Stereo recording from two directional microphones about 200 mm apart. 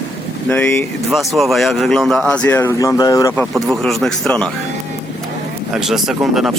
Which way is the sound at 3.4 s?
Centre (ahead or behind).